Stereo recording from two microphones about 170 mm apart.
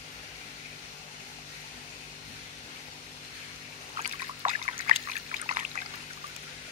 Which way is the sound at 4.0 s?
40° right (ahead or behind).